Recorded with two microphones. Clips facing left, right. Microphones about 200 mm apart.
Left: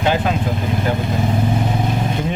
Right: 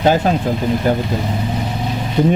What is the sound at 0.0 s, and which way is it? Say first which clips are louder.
Speech: right 4 dB; 40° right (ahead or behind).